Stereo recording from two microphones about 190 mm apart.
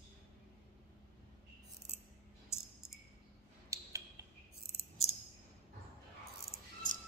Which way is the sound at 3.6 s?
15° right (ahead or behind).